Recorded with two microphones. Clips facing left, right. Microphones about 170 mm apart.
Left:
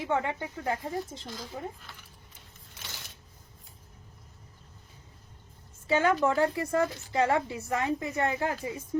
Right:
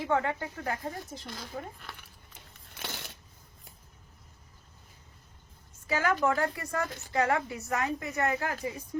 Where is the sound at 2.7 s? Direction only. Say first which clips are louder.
Right 6 dB; 65° right (ahead or behind).